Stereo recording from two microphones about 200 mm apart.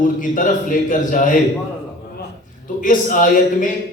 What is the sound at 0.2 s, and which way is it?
A man's voice, 40° left (ahead or behind).